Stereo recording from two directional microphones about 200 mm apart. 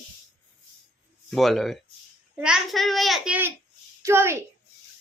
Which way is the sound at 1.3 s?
Centre (ahead or behind).